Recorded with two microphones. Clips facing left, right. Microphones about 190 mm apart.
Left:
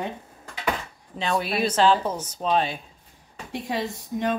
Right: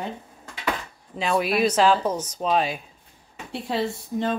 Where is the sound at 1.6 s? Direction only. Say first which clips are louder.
Left 1 dB; 10° right (ahead or behind).